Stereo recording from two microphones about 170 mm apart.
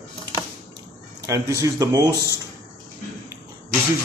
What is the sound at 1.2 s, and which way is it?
Speech, 20° right (ahead or behind).